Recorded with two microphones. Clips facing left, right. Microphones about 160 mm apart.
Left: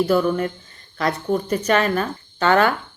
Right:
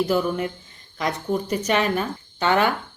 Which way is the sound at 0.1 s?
15° right (ahead or behind).